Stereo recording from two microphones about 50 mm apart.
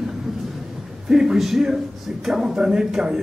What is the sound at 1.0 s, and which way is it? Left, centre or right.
Speech, centre.